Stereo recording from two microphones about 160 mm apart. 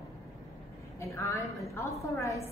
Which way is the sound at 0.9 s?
20° left (ahead or behind).